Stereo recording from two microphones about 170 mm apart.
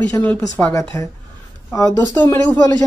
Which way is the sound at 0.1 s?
10° left (ahead or behind).